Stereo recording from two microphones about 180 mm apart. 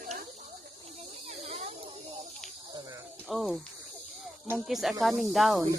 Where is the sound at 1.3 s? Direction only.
35° right (ahead or behind).